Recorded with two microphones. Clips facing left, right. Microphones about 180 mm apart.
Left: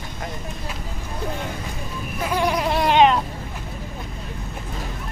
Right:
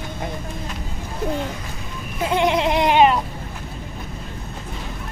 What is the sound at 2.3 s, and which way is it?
Goat, 25° right (ahead or behind).